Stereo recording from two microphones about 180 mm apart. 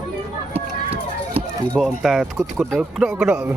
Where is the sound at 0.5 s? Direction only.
35° right (ahead or behind).